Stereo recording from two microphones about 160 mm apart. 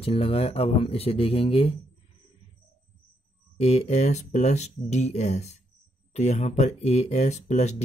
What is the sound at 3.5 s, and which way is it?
Speech, 45° left (ahead or behind).